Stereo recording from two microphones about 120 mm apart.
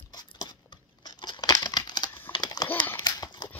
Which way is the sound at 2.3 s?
35° left (ahead or behind).